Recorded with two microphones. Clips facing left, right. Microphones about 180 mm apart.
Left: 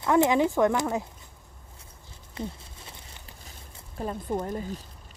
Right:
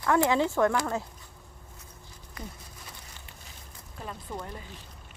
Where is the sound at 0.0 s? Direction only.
20° left (ahead or behind).